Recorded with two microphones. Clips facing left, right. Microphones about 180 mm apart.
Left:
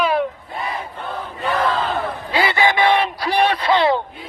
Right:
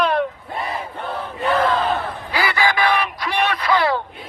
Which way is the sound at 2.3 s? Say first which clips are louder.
Left 2 dB; 25° left (ahead or behind).